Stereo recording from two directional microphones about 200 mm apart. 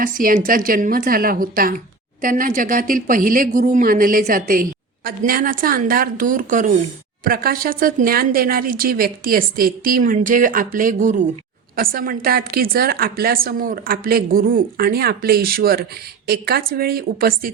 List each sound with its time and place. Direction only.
0.0 s a woman's voice: 45° right (ahead or behind)